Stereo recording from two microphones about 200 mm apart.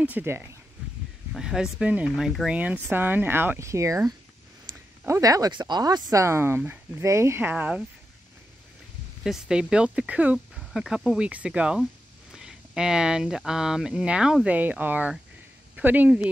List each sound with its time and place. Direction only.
0.0 s speech: 10° right (ahead or behind)
4.7 s a sound: 20° right (ahead or behind)
5.0 s speech: 15° right (ahead or behind)
9.2 s speech: 5° right (ahead or behind)